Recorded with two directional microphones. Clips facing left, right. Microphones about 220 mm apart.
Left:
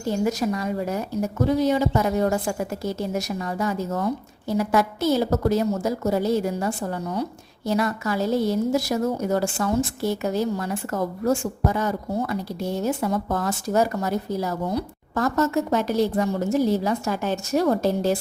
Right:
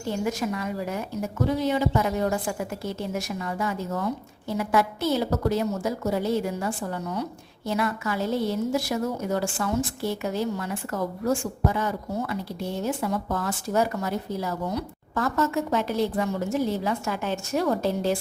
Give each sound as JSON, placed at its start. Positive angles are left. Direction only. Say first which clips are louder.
{"t": 0.3, "sound": "a woman's voice", "louder": "left 4 dB", "side_deg": 40}